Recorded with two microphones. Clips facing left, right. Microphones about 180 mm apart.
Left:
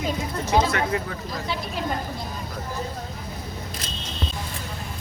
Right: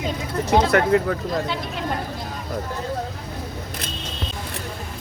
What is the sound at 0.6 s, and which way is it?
Speech, 60° right (ahead or behind).